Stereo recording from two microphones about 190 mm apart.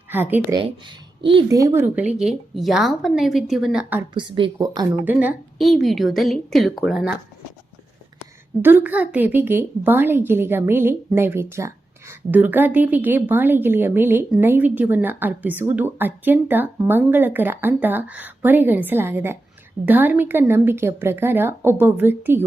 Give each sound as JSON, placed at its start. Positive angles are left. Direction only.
{"t": 0.1, "sound": "speech", "side_deg": -10}
{"t": 0.5, "sound": "speech", "side_deg": -25}
{"t": 4.1, "sound": "speech", "side_deg": -25}
{"t": 5.0, "sound": "speech", "side_deg": -5}
{"t": 8.6, "sound": "a woman's voice", "side_deg": -10}